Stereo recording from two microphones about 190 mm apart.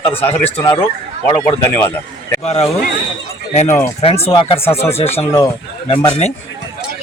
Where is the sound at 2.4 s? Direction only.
35° left (ahead or behind).